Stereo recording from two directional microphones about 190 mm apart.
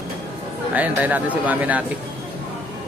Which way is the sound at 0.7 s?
10° right (ahead or behind).